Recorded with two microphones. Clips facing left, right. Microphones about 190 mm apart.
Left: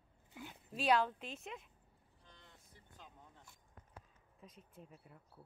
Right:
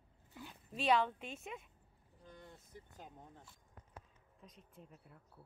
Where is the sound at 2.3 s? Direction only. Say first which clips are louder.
Right 9 dB; 50° right (ahead or behind).